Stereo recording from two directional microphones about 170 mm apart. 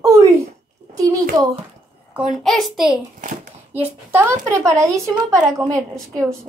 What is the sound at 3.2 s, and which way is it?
Speech, 50° right (ahead or behind).